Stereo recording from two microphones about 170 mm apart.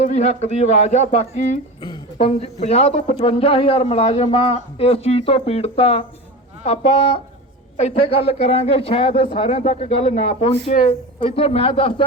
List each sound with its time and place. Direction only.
0.0 s speech: 40° left (ahead or behind)